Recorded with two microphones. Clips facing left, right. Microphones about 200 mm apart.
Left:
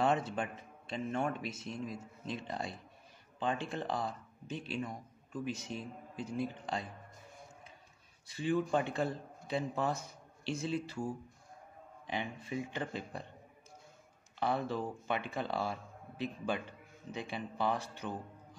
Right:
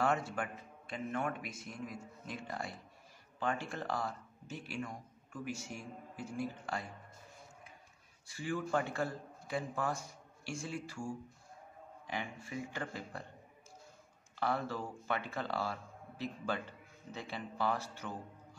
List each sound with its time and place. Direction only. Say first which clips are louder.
0.0 s a man's voice: left 2 dB; 20° left (ahead or behind)
8.3 s a man's voice: left 4 dB; 20° left (ahead or behind)
14.4 s a man's voice: left 2 dB; 15° left (ahead or behind)